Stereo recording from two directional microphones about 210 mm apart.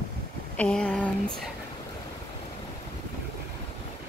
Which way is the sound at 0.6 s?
5° left (ahead or behind).